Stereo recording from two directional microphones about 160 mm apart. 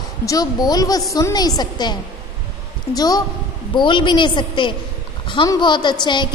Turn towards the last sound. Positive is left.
turn(degrees=30)  # may be behind; listen again after turning